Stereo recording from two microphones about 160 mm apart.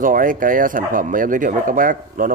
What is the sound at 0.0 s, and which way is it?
Speech, 60° right (ahead or behind).